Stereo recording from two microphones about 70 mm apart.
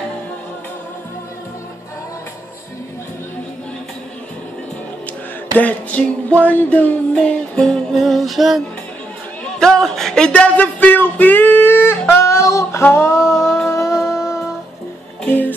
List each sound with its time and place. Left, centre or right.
5.5 s music: left; by 8.6 s centre
9.4 s speech: centre; by 12.8 s left
12.8 s a sound: left
14.1 s humming: left
15.2 s music: left